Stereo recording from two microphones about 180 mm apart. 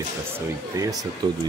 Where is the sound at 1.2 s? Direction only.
20° right (ahead or behind).